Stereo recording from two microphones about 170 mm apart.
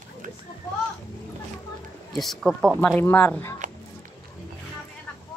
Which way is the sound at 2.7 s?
10° left (ahead or behind).